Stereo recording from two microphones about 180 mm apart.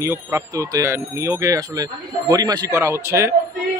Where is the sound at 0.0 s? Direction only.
15° right (ahead or behind).